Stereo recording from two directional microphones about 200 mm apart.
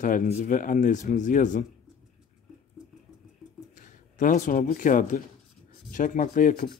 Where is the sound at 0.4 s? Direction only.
40° left (ahead or behind).